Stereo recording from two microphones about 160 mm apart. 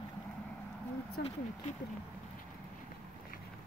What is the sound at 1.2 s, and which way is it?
Speech, 85° left.